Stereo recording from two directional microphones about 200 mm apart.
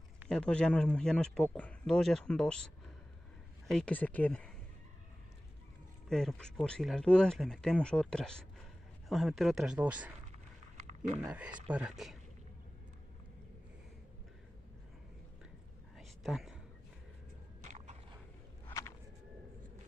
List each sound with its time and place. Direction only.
0.3 s speech: 5° left (ahead or behind)
3.7 s speech: 5° left (ahead or behind)
6.0 s speech: 5° left (ahead or behind)
11.1 s speech: 5° right (ahead or behind)
16.0 s a sound: centre (ahead or behind)
17.6 s biting: 35° right (ahead or behind)
18.7 s a sound: 15° left (ahead or behind)